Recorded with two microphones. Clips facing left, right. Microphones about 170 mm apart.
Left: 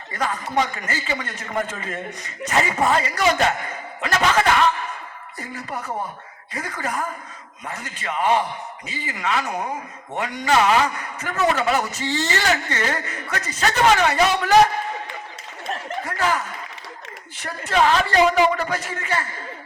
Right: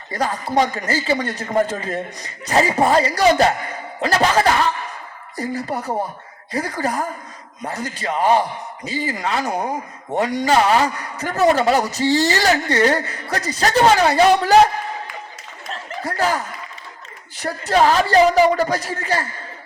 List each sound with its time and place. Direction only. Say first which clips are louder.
0.1 s a man's voice: right 4 dB; 35° right (ahead or behind)
16.0 s a man's voice: right 3 dB; 35° right (ahead or behind)